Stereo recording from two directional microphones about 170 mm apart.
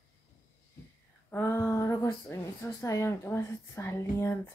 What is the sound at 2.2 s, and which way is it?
A woman's voice, 15° left (ahead or behind).